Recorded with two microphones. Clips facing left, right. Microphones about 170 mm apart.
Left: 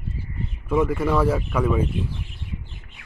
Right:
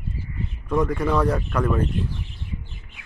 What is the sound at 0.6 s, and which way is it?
Speech, 5° left (ahead or behind).